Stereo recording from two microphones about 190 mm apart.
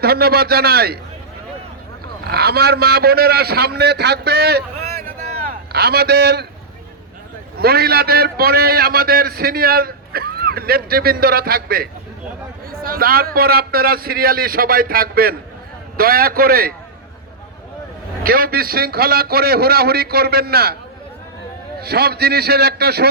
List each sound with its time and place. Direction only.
0.0 s a man's voice: 55° right (ahead or behind)
2.3 s a man's voice: 55° right (ahead or behind)
5.7 s a man's voice: 55° right (ahead or behind)
7.6 s a man's voice: 55° right (ahead or behind)
18.2 s a man's voice: 50° right (ahead or behind)
21.8 s a man's voice: 55° right (ahead or behind)